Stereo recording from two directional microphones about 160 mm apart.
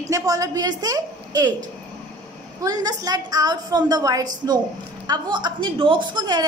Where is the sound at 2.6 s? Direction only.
25° right (ahead or behind).